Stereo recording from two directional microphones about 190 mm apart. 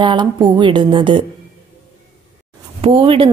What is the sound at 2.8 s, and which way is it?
Speech, 30° right (ahead or behind).